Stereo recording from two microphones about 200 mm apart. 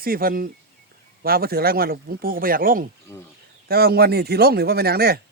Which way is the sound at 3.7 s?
50° right (ahead or behind).